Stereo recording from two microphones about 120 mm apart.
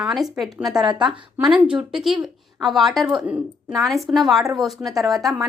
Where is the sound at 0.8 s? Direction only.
40° right (ahead or behind).